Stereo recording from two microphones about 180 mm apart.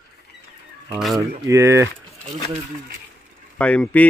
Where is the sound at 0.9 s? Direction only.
Centre (ahead or behind).